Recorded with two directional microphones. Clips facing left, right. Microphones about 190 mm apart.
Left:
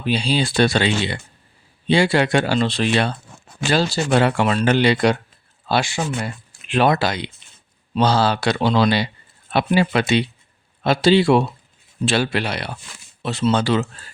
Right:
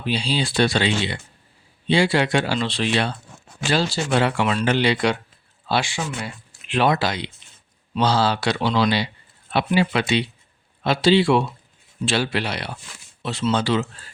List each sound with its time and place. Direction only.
0.0 s speech: 50° left (ahead or behind)